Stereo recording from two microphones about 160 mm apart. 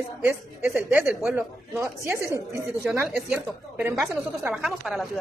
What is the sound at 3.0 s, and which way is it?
Speech, centre (ahead or behind).